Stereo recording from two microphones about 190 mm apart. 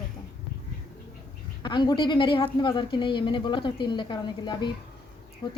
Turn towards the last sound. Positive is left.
turn(degrees=25)  # may be behind; listen again after turning